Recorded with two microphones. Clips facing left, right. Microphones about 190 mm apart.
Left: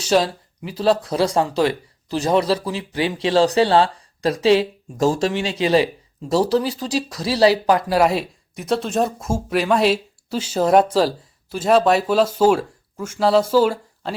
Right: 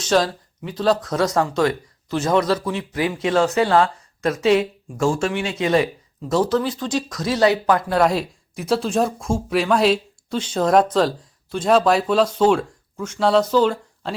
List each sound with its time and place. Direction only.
0.0 s speech: 5° left (ahead or behind)
1.0 s speech: 30° left (ahead or behind)
7.7 s speech: 10° left (ahead or behind)